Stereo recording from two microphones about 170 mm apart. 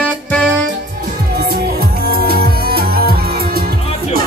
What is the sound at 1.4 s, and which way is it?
Music, 65° right (ahead or behind).